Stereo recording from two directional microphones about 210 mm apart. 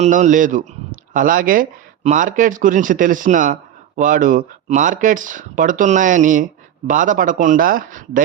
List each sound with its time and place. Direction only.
0.0 s a man's voice: 35° right (ahead or behind)